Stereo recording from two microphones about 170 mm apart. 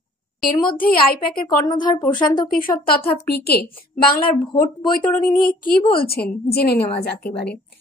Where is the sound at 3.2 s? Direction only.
70° left (ahead or behind).